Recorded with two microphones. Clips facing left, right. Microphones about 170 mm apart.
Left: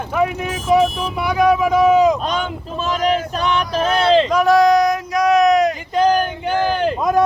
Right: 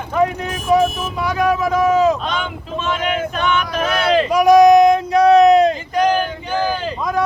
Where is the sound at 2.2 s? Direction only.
40° left (ahead or behind).